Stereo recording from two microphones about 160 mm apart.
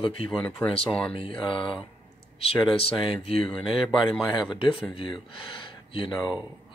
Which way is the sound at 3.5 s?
Centre (ahead or behind).